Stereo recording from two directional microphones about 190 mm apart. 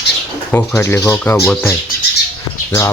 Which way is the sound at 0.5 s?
10° left (ahead or behind).